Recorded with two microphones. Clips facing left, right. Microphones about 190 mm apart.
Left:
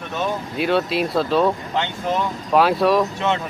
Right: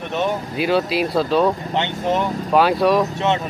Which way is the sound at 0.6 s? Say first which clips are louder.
Right 1 dB; centre (ahead or behind).